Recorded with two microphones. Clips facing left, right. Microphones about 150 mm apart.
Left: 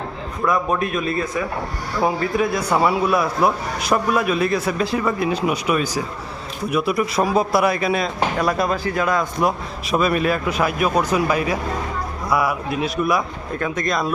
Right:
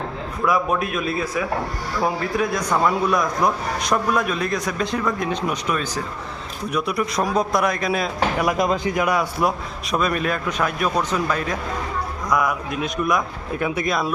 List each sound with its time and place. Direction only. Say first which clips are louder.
0.4 s speech: left 1 dB; 5° right (ahead or behind)
8.4 s speech: even; 15° right (ahead or behind)
9.4 s speech: left 1 dB; centre (ahead or behind)
13.6 s speech: even; 10° right (ahead or behind)